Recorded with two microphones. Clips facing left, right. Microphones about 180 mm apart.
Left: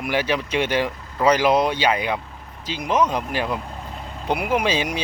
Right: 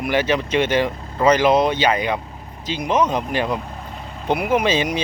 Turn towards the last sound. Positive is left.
turn(degrees=10)  # may be behind; listen again after turning